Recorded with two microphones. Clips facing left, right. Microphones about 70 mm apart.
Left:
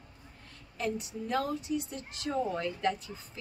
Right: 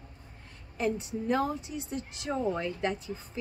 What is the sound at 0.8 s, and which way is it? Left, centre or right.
A woman's voice, right.